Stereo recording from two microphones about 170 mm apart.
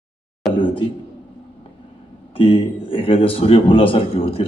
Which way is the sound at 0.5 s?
30° left (ahead or behind).